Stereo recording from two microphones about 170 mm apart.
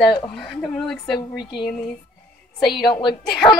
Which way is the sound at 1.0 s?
25° left (ahead or behind).